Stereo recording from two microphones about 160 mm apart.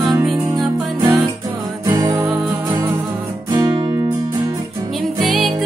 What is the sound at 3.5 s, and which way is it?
Music, 25° right (ahead or behind).